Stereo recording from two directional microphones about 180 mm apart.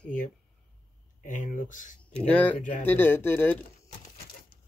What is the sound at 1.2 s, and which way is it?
Speech, 45° left (ahead or behind).